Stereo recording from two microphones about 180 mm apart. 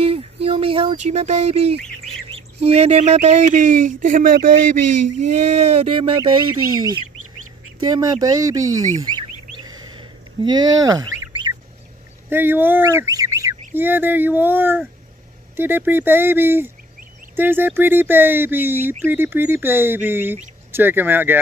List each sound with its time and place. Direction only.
0.0 s speech: 30° right (ahead or behind); by 4.6 s 50° right (ahead or behind)
5.2 s speech: 40° right (ahead or behind); by 8.6 s 20° right (ahead or behind)
9.6 s a sound: 25° right (ahead or behind)
12.3 s speech: 10° right (ahead or behind)